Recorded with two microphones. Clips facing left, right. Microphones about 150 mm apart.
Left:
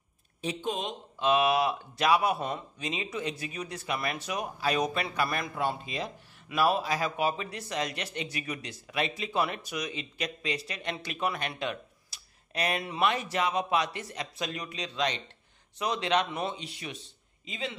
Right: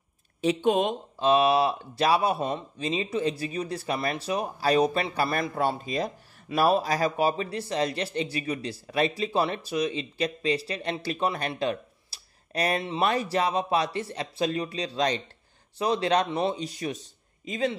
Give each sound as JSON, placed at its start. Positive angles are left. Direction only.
{"t": 0.4, "sound": "speech", "side_deg": -70}
{"t": 1.2, "sound": "speech", "side_deg": -30}